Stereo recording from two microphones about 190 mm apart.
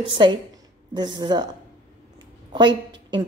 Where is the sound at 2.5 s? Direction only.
25° right (ahead or behind).